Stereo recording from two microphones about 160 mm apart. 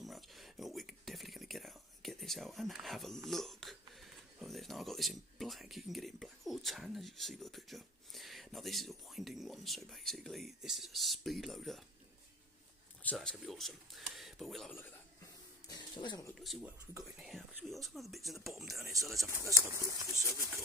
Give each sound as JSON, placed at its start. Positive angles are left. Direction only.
{"t": 0.0, "sound": "whispering", "side_deg": 0}
{"t": 3.2, "sound": "speech", "side_deg": 0}
{"t": 13.0, "sound": "speech", "side_deg": 5}
{"t": 15.6, "sound": "a sound", "side_deg": 25}
{"t": 16.3, "sound": "speech", "side_deg": 0}
{"t": 19.1, "sound": "speech", "side_deg": -20}